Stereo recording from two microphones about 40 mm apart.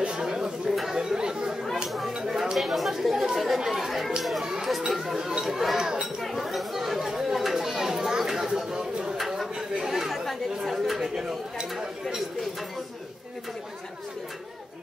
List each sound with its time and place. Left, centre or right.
0.2 s chatter: centre
2.1 s speech: centre
5.0 s speech: centre
5.8 s chatter: centre
6.2 s chatter: centre
7.3 s children playing: centre
8.2 s a sound: centre
9.4 s chatter: centre
11.7 s a sound: centre